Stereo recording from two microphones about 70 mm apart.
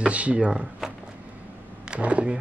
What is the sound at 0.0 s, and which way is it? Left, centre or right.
Speech, centre.